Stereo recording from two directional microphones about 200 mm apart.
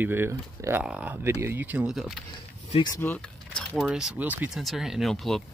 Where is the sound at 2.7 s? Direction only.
20° left (ahead or behind).